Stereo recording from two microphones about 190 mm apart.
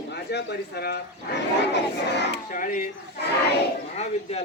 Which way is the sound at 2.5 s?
45° left (ahead or behind).